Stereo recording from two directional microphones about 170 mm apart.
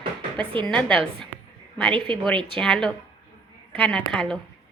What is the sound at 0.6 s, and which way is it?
Speech, 5° left (ahead or behind).